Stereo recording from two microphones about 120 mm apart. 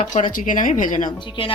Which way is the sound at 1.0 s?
40° left (ahead or behind).